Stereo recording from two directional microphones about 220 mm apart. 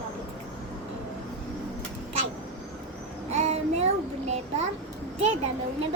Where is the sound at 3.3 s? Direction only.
30° right (ahead or behind).